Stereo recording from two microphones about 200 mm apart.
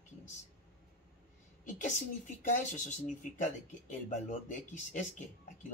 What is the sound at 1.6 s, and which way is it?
A woman's voice, 40° left (ahead or behind).